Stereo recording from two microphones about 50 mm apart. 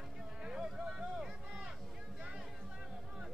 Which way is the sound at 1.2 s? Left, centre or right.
Centre.